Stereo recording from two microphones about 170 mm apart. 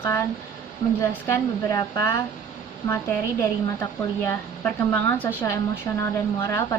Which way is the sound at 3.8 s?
10° left (ahead or behind).